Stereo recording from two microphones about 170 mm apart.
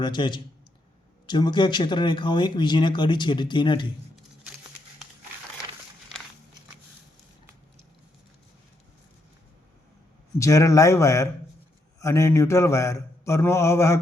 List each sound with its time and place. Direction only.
0.0 s speech: 25° left (ahead or behind)
10.3 s speech: 20° left (ahead or behind)